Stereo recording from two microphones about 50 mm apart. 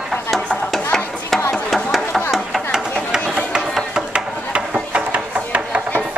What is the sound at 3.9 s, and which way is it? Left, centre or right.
Ratchet, centre.